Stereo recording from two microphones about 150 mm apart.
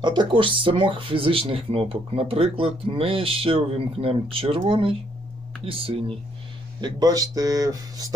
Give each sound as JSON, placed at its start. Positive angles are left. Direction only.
{"t": 0.0, "sound": "speech", "side_deg": -30}
{"t": 6.8, "sound": "speech", "side_deg": -25}